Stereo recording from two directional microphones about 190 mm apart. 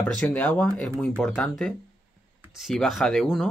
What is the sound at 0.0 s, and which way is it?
Speech, 5° left (ahead or behind).